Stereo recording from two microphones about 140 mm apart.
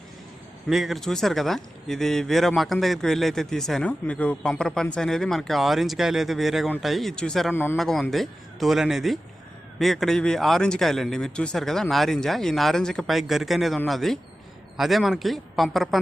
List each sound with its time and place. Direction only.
0.7 s speech: centre (ahead or behind)
7.5 s a man's voice: 15° left (ahead or behind)
7.8 s speech: centre (ahead or behind)